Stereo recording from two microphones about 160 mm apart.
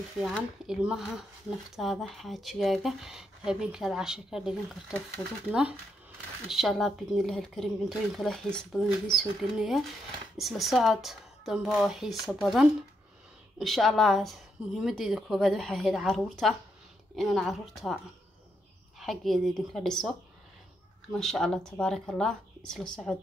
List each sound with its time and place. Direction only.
0.2 s speech: 5° right (ahead or behind)